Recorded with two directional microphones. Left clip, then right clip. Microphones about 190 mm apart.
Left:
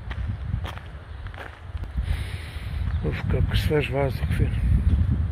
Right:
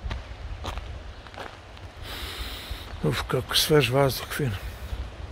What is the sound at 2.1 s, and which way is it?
Speech, 25° right (ahead or behind).